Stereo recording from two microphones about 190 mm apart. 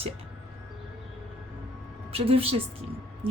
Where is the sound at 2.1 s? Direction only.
30° right (ahead or behind).